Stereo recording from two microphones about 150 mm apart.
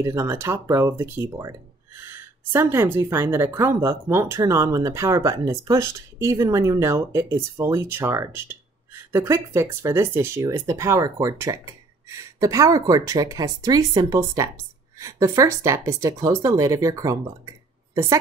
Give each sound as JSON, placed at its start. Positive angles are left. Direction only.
{"t": 0.0, "sound": "a woman's voice", "side_deg": -20}